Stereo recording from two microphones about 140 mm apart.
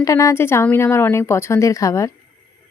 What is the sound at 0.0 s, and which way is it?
Speech, 25° left (ahead or behind).